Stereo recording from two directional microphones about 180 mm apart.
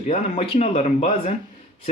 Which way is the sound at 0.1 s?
35° left (ahead or behind).